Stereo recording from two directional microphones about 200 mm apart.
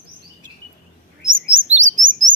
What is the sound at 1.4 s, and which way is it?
Chirp, 30° right (ahead or behind).